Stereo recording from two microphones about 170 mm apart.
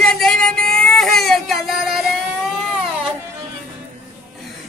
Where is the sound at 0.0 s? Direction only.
5° left (ahead or behind).